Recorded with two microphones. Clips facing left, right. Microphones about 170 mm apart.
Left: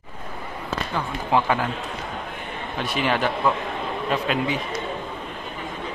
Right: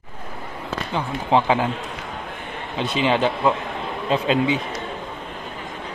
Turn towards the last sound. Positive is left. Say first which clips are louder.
# right 4 dB
turn(degrees=-25)  # may be behind; listen again after turning